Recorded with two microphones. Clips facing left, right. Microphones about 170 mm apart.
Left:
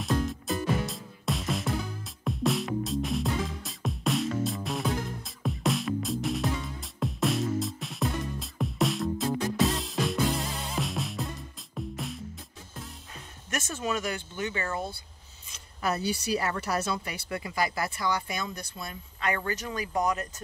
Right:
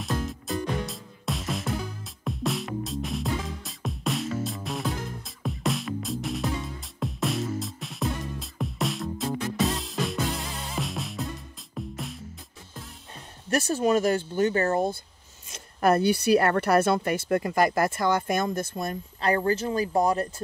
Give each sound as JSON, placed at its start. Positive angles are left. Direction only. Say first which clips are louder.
{"t": 0.0, "sound": "music", "louder": "left 2 dB", "side_deg": 0}
{"t": 13.5, "sound": "speech", "louder": "right 9 dB", "side_deg": -35}
{"t": 19.2, "sound": "speech", "louder": "right 7 dB", "side_deg": -35}